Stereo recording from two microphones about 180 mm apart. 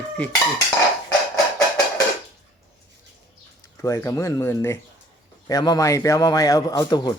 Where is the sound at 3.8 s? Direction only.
15° left (ahead or behind).